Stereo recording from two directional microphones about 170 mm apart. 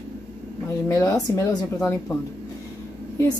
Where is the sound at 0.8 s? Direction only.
20° left (ahead or behind).